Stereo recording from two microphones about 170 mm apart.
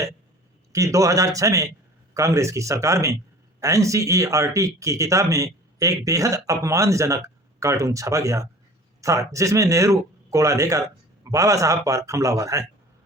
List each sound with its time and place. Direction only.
0.7 s speech: 20° right (ahead or behind)